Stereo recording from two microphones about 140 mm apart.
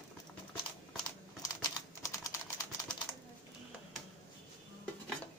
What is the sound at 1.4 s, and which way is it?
Typing, 25° left (ahead or behind).